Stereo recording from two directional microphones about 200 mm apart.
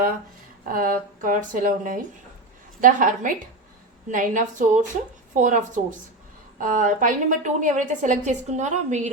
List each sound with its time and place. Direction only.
0.7 s a woman's voice: 45° right (ahead or behind)